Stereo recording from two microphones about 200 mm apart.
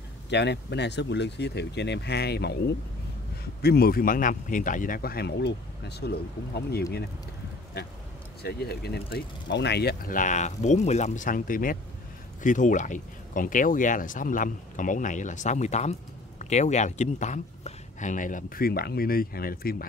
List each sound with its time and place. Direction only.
0.3 s speech: 60° left (ahead or behind)
8.4 s speech: 55° left (ahead or behind)